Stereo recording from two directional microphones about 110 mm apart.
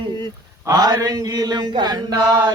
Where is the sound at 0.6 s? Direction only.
35° right (ahead or behind).